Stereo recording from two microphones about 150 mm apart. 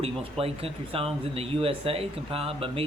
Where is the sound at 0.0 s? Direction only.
40° right (ahead or behind).